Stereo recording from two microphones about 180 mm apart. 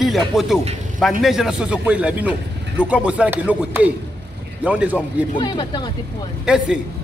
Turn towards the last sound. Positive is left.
turn(degrees=-5)  # may be behind; listen again after turning